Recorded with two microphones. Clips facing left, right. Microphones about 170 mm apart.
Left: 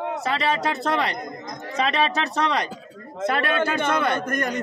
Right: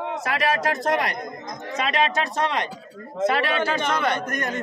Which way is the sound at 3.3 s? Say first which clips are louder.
Even; 55° left (ahead or behind).